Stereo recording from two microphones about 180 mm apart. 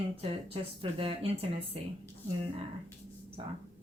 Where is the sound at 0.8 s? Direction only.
30° right (ahead or behind).